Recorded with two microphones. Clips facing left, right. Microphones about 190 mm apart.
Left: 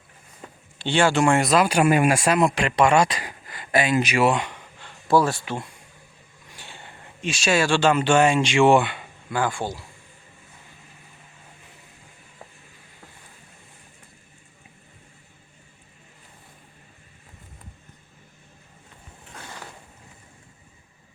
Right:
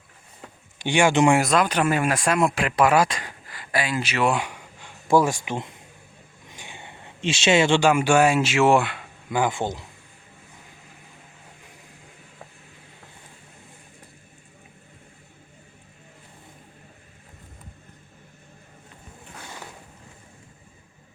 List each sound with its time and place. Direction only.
0.8 s speech: 15° right (ahead or behind)
1.4 s speech: centre (ahead or behind)
3.5 s speech: 20° left (ahead or behind)
4.3 s speech: 10° right (ahead or behind)
6.5 s a sound: 15° right (ahead or behind)
7.9 s speech: 10° right (ahead or behind)
9.3 s speech: 20° right (ahead or behind)